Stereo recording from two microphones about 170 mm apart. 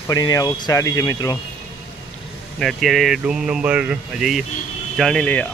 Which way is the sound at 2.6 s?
Centre (ahead or behind).